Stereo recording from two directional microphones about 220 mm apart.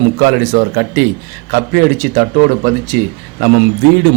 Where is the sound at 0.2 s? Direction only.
50° right (ahead or behind).